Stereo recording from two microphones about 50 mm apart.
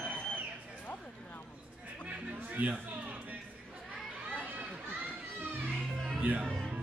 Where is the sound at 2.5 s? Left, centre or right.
Right.